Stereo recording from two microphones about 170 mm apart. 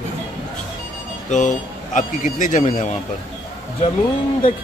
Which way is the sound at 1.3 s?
45° left (ahead or behind).